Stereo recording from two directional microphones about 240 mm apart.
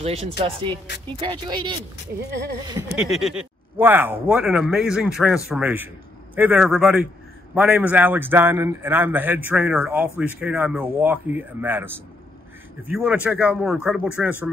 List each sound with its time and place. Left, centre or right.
0.0 s speech: right
3.0 s a man's voice: centre